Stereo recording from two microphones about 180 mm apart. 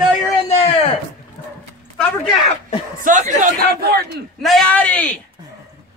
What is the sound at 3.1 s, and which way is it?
Speech, 45° right (ahead or behind).